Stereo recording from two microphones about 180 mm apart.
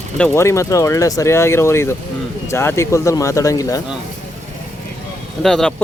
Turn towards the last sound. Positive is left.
turn(degrees=5)  # may be behind; listen again after turning